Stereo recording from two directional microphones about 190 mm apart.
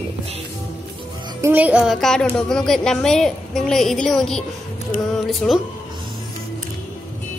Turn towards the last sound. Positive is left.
turn(degrees=0)  # may be behind; listen again after turning